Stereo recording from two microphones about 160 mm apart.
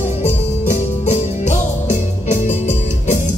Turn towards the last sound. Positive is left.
turn(degrees=50)  # may be behind; listen again after turning